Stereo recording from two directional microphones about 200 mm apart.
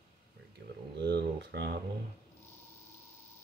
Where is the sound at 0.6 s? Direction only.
50° right (ahead or behind).